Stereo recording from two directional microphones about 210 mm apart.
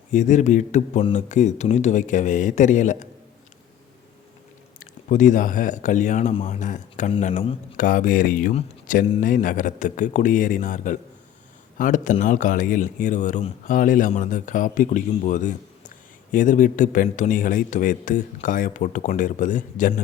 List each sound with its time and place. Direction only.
0.1 s speech: 35° left (ahead or behind)
4.8 s speech: 35° left (ahead or behind)